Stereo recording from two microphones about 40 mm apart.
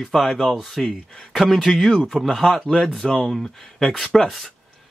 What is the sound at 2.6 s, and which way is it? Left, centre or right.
Speech, centre.